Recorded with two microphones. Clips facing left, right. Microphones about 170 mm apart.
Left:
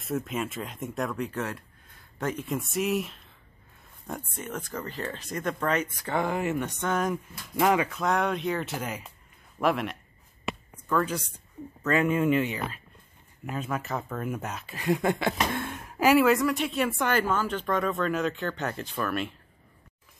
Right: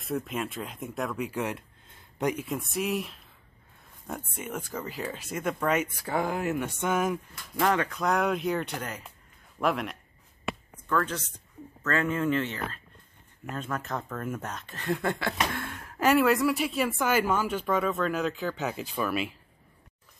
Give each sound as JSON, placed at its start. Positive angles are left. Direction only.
{"t": 0.0, "sound": "speech", "side_deg": 0}
{"t": 2.3, "sound": "speech", "side_deg": 0}
{"t": 4.3, "sound": "speech", "side_deg": -10}
{"t": 7.5, "sound": "speech", "side_deg": 10}
{"t": 15.5, "sound": "a sound", "side_deg": 20}
{"t": 16.0, "sound": "speech", "side_deg": 5}